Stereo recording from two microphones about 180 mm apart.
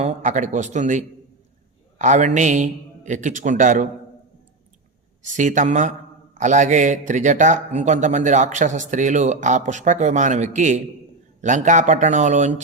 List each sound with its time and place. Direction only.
0.0 s a man's voice: 40° right (ahead or behind)
5.2 s a man's voice: 45° right (ahead or behind)